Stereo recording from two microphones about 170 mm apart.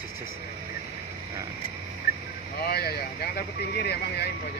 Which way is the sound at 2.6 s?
70° left (ahead or behind).